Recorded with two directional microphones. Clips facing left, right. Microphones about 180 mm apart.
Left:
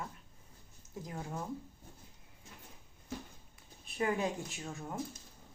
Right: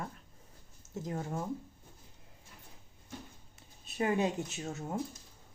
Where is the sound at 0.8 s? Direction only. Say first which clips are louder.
Right 4 dB; 25° right (ahead or behind).